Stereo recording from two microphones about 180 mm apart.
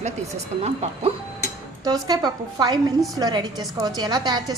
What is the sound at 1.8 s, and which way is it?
A woman's voice, 20° right (ahead or behind).